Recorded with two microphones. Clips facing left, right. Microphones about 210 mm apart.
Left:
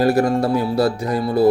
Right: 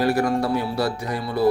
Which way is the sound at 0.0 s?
40° left (ahead or behind).